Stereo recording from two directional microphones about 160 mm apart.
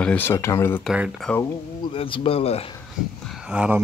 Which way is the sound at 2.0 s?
35° left (ahead or behind).